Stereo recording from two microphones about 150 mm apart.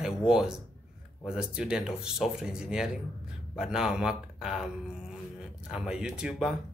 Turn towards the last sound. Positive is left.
turn(degrees=-5)  # may be behind; listen again after turning